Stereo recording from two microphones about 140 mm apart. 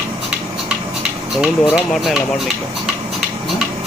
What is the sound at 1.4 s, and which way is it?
Speech, 5° right (ahead or behind).